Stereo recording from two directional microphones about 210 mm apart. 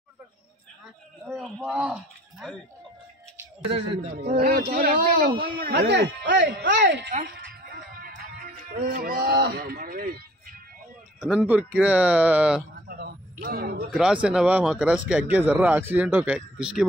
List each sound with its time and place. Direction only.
1.2 s speech: centre (ahead or behind)
4.3 s speech: 35° right (ahead or behind)
5.7 s speech: 55° right (ahead or behind)
7.1 s speech: 45° right (ahead or behind)
11.2 s speech: 5° right (ahead or behind)
12.8 s a sound: 45° right (ahead or behind)
13.9 s speech: 5° right (ahead or behind)